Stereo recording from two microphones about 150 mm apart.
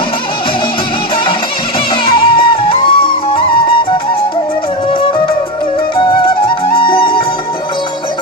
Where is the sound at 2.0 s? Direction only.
35° left (ahead or behind).